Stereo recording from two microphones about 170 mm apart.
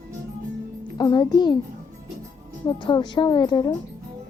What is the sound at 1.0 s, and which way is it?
Speech, 25° left (ahead or behind).